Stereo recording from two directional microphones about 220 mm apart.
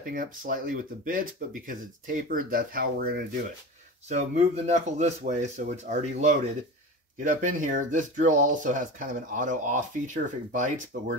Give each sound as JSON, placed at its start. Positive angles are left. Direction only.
{"t": 0.1, "sound": "speech", "side_deg": -40}
{"t": 10.9, "sound": "speech", "side_deg": -55}